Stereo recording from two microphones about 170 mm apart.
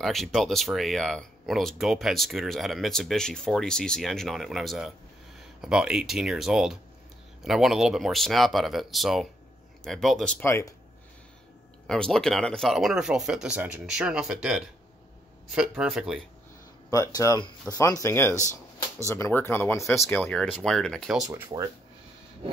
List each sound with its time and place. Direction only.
0.0 s speech: centre (ahead or behind)
11.9 s speech: 5° left (ahead or behind)
16.9 s speech: 20° left (ahead or behind); by 21.3 s centre (ahead or behind)
21.3 s speech: 15° right (ahead or behind)